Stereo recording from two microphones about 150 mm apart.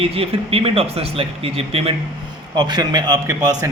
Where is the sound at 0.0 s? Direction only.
40° right (ahead or behind).